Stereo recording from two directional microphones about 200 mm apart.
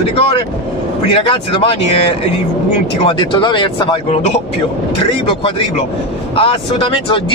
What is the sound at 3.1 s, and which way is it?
Speech, 25° left (ahead or behind).